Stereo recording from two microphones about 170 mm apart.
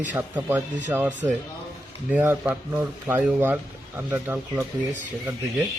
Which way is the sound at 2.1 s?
10° right (ahead or behind).